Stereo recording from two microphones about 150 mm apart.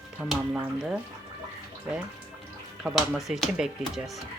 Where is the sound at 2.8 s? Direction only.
Centre (ahead or behind).